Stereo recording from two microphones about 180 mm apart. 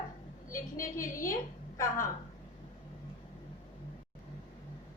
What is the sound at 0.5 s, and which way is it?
Speech, 15° left (ahead or behind).